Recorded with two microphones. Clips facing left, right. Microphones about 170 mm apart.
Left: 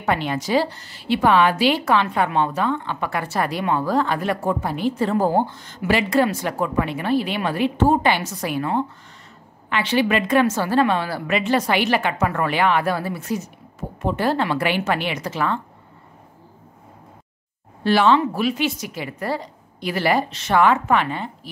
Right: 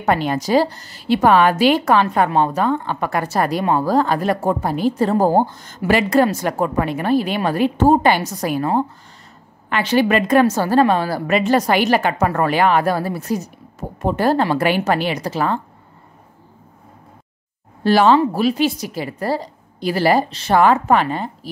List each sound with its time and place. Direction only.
0.0 s a woman's voice: 40° right (ahead or behind)
17.8 s a woman's voice: 40° right (ahead or behind)